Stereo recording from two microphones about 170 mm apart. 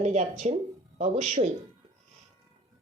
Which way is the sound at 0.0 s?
45° right (ahead or behind).